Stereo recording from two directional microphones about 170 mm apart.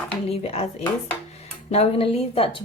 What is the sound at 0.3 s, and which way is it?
Speech, 35° left (ahead or behind).